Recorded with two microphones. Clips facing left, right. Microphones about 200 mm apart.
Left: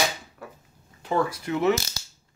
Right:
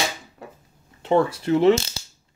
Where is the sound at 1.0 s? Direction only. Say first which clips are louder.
Right 6 dB; 25° right (ahead or behind).